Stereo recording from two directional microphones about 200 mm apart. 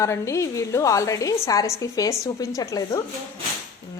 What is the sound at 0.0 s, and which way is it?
Speech, 15° left (ahead or behind).